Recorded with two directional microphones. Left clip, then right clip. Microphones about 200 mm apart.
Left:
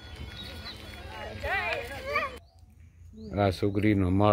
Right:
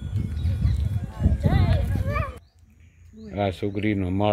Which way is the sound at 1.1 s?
45° right (ahead or behind).